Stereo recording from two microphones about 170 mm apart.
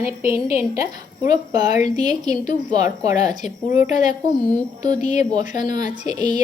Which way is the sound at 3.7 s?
45° left (ahead or behind).